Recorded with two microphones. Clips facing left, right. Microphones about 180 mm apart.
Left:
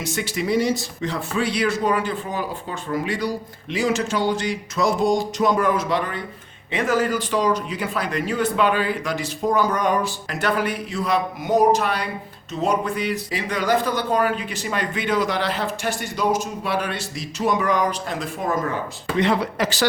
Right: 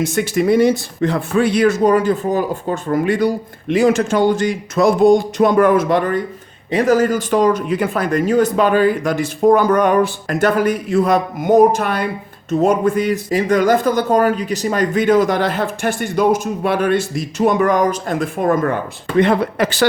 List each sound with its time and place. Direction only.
0.0 s speech: 50° right (ahead or behind)